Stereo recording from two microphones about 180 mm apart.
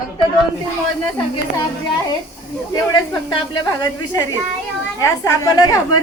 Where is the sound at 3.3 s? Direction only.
25° left (ahead or behind).